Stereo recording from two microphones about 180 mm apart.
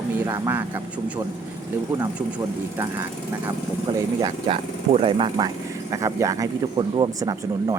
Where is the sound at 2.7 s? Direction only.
15° right (ahead or behind).